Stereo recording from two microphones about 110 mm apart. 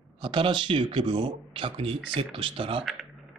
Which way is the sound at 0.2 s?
50° right (ahead or behind).